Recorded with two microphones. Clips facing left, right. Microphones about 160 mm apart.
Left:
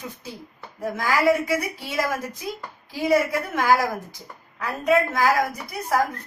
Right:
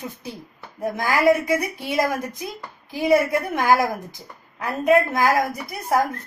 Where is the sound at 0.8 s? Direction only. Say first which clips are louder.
Right 2 dB; 20° right (ahead or behind).